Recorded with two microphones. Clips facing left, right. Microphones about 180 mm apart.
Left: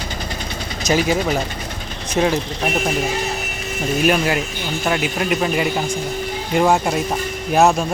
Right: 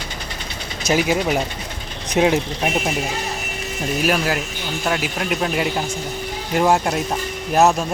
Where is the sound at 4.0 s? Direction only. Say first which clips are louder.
Left 3 dB; centre (ahead or behind).